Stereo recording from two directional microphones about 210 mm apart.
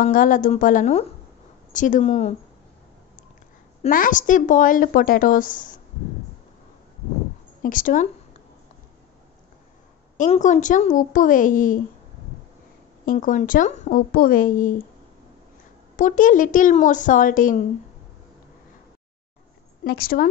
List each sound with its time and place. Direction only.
0.0 s a woman's voice: 40° left (ahead or behind)
3.8 s a woman's voice: 40° left (ahead or behind)
7.6 s speech: 40° left (ahead or behind)
10.1 s a woman's voice: 35° left (ahead or behind)
13.0 s a woman's voice: 40° left (ahead or behind)
16.0 s a woman's voice: 40° left (ahead or behind)
19.8 s speech: 45° left (ahead or behind)